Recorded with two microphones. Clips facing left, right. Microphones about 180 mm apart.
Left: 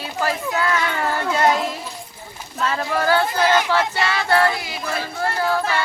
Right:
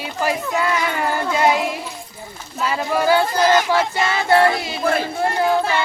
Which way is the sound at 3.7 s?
15° right (ahead or behind).